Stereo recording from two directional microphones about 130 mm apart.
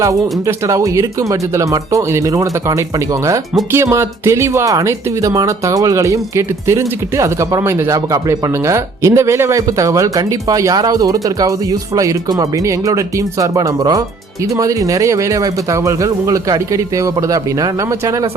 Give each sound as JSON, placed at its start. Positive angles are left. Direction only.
{"t": 0.0, "sound": "speech", "side_deg": -25}